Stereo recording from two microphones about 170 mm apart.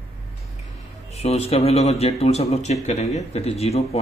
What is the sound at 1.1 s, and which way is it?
Speech, 40° left (ahead or behind).